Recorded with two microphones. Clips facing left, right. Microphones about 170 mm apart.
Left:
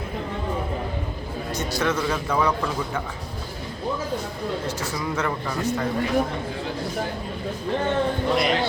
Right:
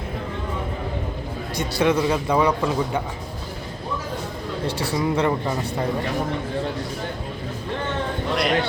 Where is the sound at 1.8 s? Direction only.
15° right (ahead or behind).